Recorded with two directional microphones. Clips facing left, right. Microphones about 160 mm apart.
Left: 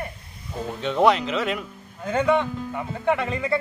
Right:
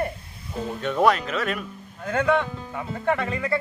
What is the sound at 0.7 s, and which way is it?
Speech, 20° left (ahead or behind).